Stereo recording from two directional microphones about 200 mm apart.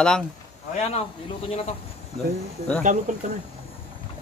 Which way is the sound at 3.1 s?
40° right (ahead or behind).